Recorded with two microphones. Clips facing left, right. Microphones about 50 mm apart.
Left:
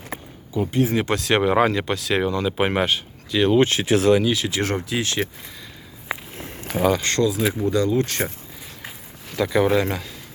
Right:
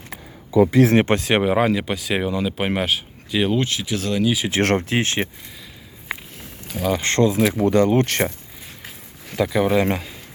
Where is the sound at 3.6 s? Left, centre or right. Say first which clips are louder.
Left 6 dB; left.